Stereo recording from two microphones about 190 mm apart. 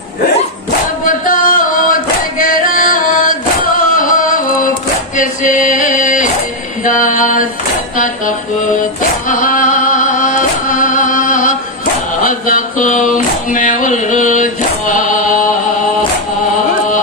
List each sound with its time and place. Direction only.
1.0 s singing: 45° left (ahead or behind)
5.1 s a sound: 40° left (ahead or behind)
7.9 s music: 45° left (ahead or behind)
15.1 s chant: 45° left (ahead or behind)